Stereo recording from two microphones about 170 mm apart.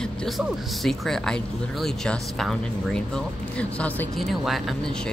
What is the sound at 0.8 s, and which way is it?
Speech, centre (ahead or behind).